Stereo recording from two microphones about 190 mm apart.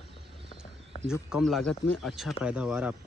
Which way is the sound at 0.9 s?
35° left (ahead or behind).